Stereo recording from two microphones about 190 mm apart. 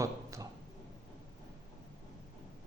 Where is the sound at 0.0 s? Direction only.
15° right (ahead or behind).